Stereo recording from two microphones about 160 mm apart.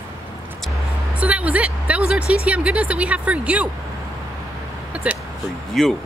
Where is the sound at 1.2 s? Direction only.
10° right (ahead or behind).